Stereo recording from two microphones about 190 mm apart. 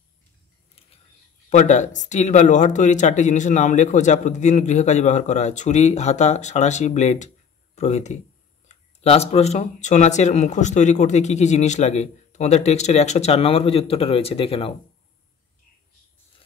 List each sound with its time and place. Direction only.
1.5 s speech: 40° left (ahead or behind)